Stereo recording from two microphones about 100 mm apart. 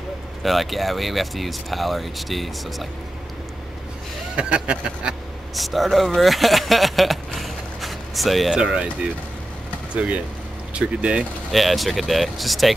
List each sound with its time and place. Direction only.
0.4 s speech: centre (ahead or behind)
4.4 s speech: 10° right (ahead or behind)